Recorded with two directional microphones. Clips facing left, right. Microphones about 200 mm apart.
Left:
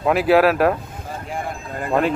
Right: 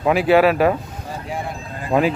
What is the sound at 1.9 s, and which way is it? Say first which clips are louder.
Speech: right 2 dB; centre (ahead or behind).